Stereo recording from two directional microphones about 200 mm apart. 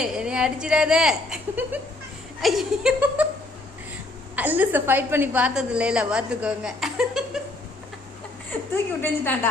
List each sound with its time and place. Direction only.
0.0 s a woman's voice: 5° right (ahead or behind)
4.4 s a woman's voice: 10° right (ahead or behind)
9.0 s a woman's voice: 10° left (ahead or behind)